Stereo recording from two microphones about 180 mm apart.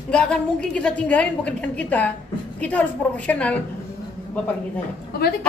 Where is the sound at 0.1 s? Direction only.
5° left (ahead or behind).